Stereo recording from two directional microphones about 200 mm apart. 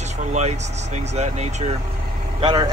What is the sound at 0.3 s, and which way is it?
Speech, 35° right (ahead or behind).